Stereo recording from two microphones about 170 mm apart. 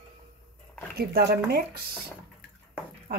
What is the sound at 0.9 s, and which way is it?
Speech, 70° right (ahead or behind).